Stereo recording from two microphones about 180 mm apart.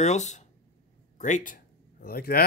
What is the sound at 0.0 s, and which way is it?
Speech, 40° left (ahead or behind).